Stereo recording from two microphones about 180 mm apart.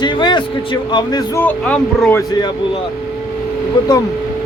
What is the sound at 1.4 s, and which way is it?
Speech, 10° left (ahead or behind).